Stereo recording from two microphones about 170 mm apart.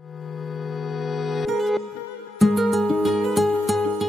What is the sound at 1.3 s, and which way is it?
Music, centre (ahead or behind).